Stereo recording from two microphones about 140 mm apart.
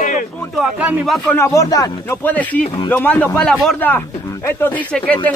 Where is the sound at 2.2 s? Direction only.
10° left (ahead or behind).